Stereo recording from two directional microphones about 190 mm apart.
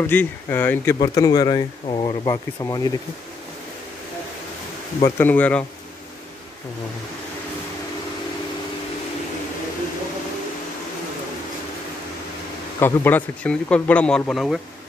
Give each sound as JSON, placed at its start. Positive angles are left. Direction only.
{"t": 0.0, "sound": "speech", "side_deg": 10}
{"t": 5.0, "sound": "speech", "side_deg": 10}
{"t": 12.8, "sound": "speech", "side_deg": 10}